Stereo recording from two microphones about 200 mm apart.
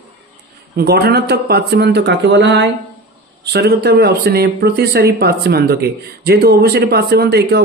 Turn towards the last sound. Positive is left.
turn(degrees=-55)  # may be behind; listen again after turning